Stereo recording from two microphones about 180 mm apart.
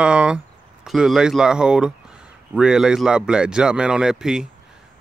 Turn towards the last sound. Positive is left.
turn(degrees=-5)  # may be behind; listen again after turning